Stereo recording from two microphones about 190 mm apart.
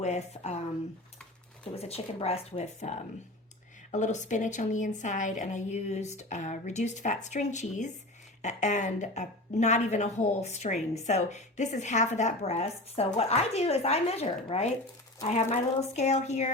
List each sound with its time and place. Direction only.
0.0 s a woman's voice: 35° left (ahead or behind)
1.7 s a woman's voice: 30° left (ahead or behind)